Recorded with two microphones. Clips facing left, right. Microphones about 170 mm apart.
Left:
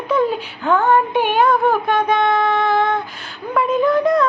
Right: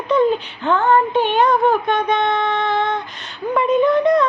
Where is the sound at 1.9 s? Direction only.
5° left (ahead or behind).